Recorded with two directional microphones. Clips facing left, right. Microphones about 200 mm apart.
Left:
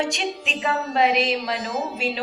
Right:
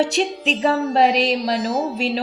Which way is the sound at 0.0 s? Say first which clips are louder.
Right 6 dB; 35° right (ahead or behind).